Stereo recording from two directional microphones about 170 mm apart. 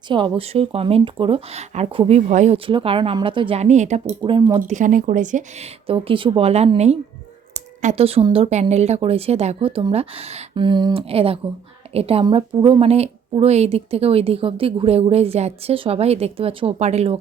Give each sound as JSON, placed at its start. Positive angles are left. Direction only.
{"t": 0.1, "sound": "speech", "side_deg": -30}
{"t": 2.6, "sound": "speech", "side_deg": -30}
{"t": 4.2, "sound": "speech", "side_deg": -25}
{"t": 4.7, "sound": "speech", "side_deg": -50}
{"t": 5.9, "sound": "speech", "side_deg": -30}